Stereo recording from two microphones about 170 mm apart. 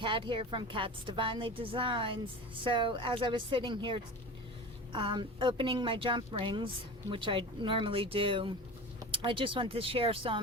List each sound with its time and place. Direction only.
0.0 s a woman's voice: 30° right (ahead or behind)